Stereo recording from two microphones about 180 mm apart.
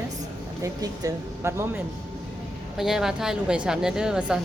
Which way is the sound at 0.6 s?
20° right (ahead or behind).